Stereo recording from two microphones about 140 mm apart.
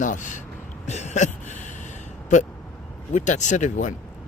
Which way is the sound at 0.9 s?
55° left (ahead or behind).